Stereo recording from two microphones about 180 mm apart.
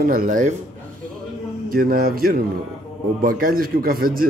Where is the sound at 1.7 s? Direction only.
55° right (ahead or behind).